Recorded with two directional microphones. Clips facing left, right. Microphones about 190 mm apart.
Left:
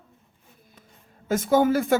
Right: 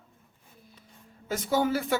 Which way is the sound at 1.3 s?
50° left (ahead or behind).